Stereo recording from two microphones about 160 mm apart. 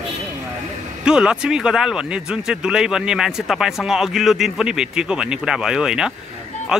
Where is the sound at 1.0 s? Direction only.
5° right (ahead or behind).